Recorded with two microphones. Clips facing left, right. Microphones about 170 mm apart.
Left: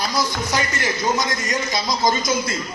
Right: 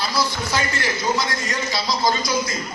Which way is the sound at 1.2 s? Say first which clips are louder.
Left 2 dB; 20° left (ahead or behind).